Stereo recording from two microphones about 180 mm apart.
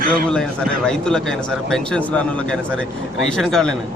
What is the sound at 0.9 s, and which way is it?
A man's voice, 5° left (ahead or behind).